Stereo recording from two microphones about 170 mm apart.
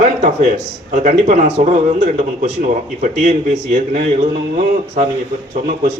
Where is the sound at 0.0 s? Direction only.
45° right (ahead or behind).